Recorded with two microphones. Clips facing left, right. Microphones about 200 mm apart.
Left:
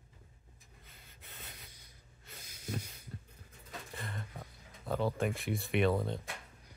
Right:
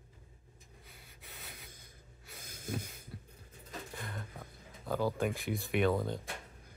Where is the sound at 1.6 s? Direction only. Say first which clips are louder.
Right 4 dB; 50° right (ahead or behind).